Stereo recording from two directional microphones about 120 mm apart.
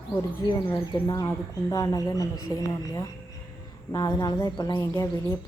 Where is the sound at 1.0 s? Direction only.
30° left (ahead or behind).